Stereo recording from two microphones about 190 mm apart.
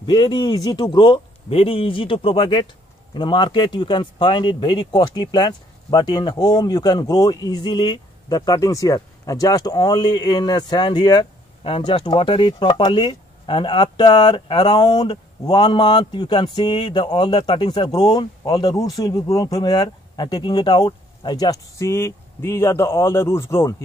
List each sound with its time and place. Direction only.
0.0 s speech: 25° left (ahead or behind)